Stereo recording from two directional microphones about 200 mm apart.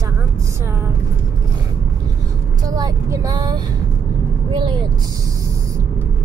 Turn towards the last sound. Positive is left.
turn(degrees=-20)  # may be behind; listen again after turning